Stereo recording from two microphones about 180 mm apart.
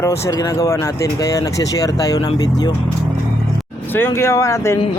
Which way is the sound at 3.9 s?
15° left (ahead or behind).